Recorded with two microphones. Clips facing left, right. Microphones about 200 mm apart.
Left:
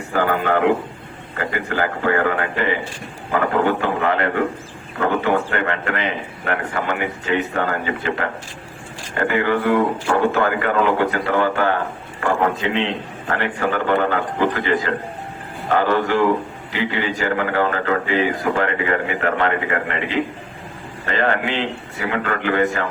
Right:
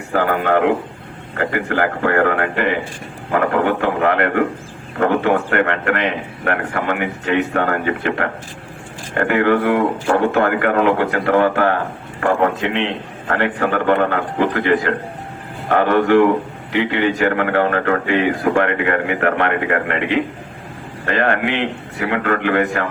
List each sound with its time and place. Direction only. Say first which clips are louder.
0.1 s speech: right 2 dB; 60° right (ahead or behind)